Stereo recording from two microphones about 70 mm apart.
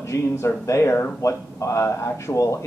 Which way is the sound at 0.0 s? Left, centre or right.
Left.